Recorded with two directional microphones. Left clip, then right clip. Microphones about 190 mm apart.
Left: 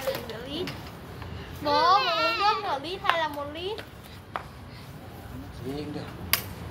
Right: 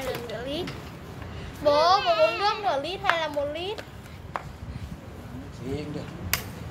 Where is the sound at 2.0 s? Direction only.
40° left (ahead or behind).